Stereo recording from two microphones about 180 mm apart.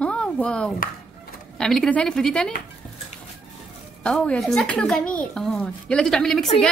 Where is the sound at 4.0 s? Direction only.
5° left (ahead or behind).